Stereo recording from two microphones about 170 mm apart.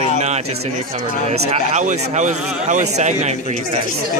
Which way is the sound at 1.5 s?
45° right (ahead or behind).